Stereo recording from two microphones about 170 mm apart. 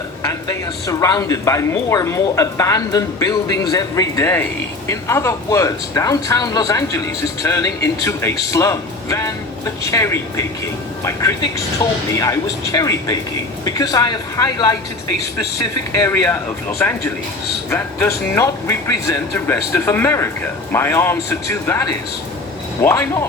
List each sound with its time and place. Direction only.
0.2 s a man's voice: 20° left (ahead or behind)
16.0 s a man's voice: 10° left (ahead or behind)
17.7 s a man's voice: 10° left (ahead or behind)